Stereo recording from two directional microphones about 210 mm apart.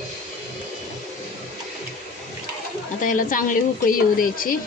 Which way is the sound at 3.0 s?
40° left (ahead or behind).